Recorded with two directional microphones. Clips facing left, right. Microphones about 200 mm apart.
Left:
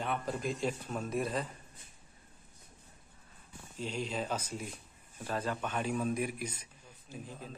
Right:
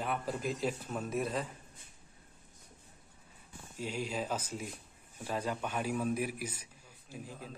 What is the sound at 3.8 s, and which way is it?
A man's voice, 10° right (ahead or behind).